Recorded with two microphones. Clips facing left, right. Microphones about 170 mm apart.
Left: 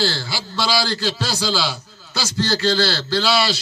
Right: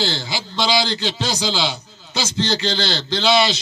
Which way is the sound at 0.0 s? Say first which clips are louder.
Left 1 dB; 20° right (ahead or behind).